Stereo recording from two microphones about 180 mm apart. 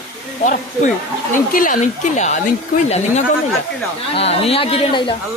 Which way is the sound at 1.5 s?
50° left (ahead or behind).